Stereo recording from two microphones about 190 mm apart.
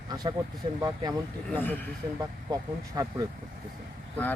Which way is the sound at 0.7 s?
20° right (ahead or behind).